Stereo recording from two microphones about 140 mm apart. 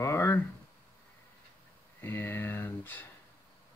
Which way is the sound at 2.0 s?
15° left (ahead or behind).